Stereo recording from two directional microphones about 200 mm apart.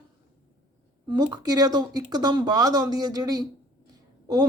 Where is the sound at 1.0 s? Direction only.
20° right (ahead or behind).